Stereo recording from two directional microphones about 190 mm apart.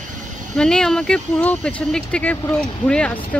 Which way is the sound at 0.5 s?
5° left (ahead or behind).